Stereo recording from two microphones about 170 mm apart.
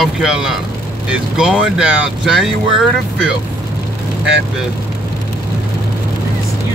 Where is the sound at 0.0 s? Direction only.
5° right (ahead or behind).